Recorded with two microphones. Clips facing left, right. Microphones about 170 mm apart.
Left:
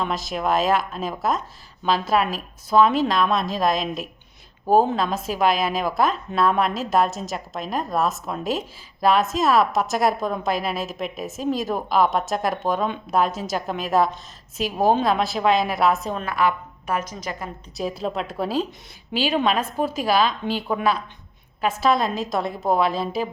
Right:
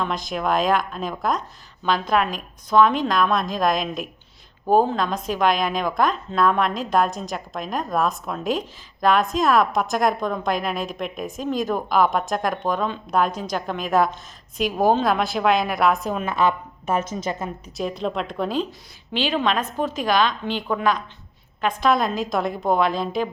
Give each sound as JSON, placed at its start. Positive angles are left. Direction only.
{"t": 0.0, "sound": "a woman's voice", "side_deg": 5}
{"t": 16.2, "sound": "a woman's voice", "side_deg": -20}
{"t": 17.7, "sound": "a woman's voice", "side_deg": 5}